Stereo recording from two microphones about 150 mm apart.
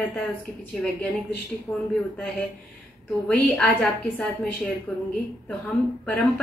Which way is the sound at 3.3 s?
5° left (ahead or behind).